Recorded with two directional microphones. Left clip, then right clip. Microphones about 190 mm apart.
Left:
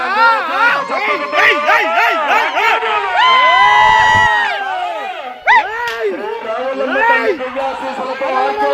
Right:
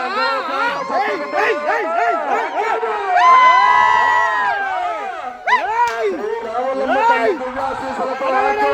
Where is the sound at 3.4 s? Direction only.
65° left (ahead or behind).